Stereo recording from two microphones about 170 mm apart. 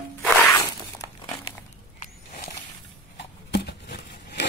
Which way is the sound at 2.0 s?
50° left (ahead or behind).